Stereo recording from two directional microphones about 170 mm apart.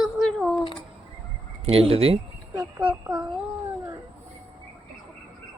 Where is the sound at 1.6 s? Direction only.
35° right (ahead or behind).